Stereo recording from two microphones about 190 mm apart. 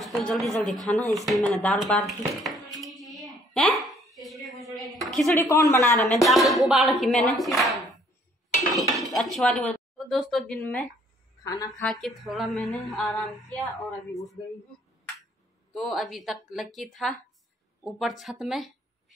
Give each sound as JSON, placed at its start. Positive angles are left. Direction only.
{"t": 0.0, "sound": "a woman's voice", "side_deg": 0}
{"t": 1.5, "sound": "a sound", "side_deg": 5}
{"t": 5.3, "sound": "speech", "side_deg": 15}
{"t": 6.2, "sound": "speech", "side_deg": 0}
{"t": 8.7, "sound": "dishes", "side_deg": 0}
{"t": 11.4, "sound": "speech", "side_deg": 20}
{"t": 11.8, "sound": "a woman's voice", "side_deg": 0}
{"t": 15.7, "sound": "a woman's voice", "side_deg": 0}